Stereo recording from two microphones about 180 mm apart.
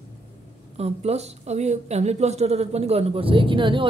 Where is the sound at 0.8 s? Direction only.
35° right (ahead or behind).